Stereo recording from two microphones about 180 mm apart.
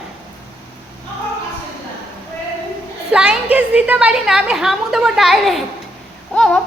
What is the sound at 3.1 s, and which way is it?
A woman's voice, 5° right (ahead or behind).